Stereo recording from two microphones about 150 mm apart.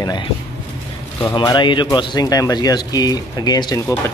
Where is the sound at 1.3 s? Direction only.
30° left (ahead or behind).